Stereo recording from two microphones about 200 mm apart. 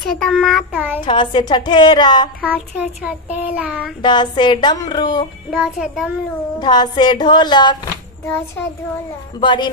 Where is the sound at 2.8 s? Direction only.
5° right (ahead or behind).